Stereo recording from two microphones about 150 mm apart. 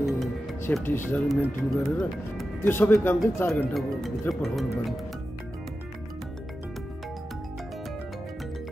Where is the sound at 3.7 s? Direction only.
Centre (ahead or behind).